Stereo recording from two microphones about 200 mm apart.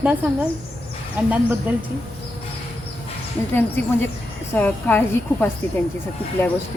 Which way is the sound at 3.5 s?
10° left (ahead or behind).